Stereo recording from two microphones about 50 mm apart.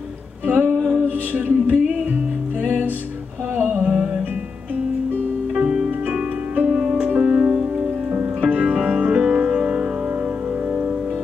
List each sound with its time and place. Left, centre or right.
0.5 s music: right
3.8 s music: right
5.6 s music: centre
6.5 s music: right
6.8 s music: centre
8.1 s music: right
8.6 s music: centre